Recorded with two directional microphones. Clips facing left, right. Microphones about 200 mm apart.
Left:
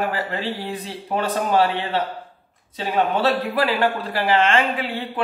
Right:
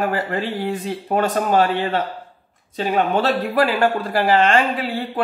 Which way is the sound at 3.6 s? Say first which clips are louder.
Right 3 dB; 45° right (ahead or behind).